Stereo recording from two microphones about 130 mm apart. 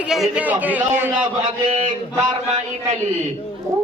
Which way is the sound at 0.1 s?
5° right (ahead or behind).